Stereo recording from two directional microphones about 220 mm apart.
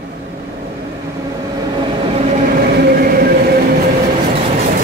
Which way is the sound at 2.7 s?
45° right (ahead or behind).